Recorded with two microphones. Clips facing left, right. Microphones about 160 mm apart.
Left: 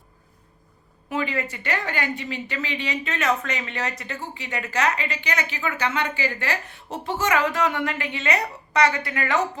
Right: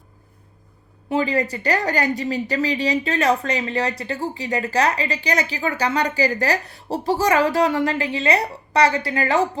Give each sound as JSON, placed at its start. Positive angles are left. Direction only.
{"t": 1.1, "sound": "speech", "side_deg": -35}